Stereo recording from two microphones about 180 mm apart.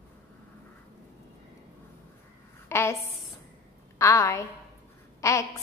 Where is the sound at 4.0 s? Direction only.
15° left (ahead or behind).